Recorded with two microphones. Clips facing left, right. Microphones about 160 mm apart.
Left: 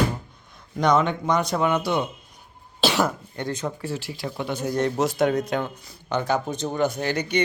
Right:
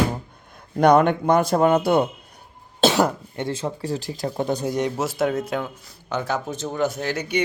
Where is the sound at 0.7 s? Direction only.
60° right (ahead or behind).